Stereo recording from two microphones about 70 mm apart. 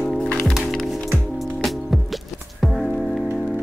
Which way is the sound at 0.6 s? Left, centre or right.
Centre.